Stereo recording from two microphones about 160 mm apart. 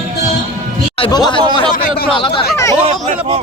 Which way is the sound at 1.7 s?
60° left (ahead or behind).